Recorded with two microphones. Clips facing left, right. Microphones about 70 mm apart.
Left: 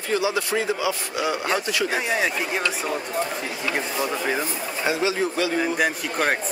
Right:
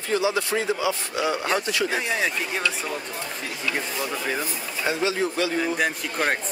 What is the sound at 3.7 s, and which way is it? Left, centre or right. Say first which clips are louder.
Speech: left 3 dB; centre.